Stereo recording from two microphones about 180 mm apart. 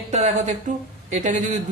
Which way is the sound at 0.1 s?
40° right (ahead or behind).